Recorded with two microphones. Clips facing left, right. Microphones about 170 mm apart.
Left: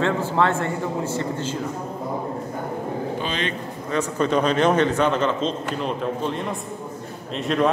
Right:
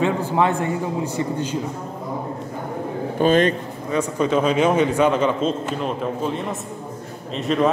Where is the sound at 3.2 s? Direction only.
45° right (ahead or behind).